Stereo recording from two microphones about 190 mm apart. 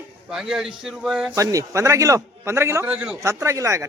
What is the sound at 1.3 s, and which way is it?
A man's voice, 15° right (ahead or behind).